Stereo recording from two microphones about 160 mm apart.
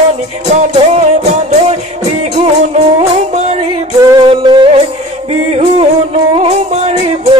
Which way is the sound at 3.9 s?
20° right (ahead or behind).